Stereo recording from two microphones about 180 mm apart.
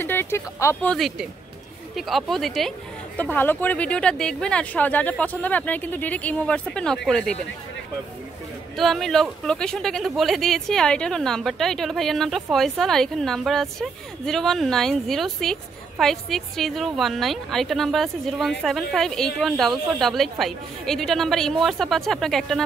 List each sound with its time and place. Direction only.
0.0 s speech: 10° left (ahead or behind)
0.9 s speech: centre (ahead or behind)
8.7 s speech: centre (ahead or behind)